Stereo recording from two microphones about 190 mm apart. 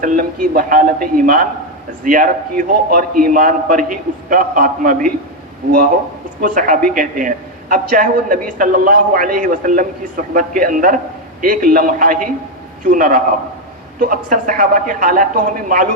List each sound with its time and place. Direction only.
0.0 s a man's voice: 45° right (ahead or behind)
6.4 s a man's voice: 45° right (ahead or behind)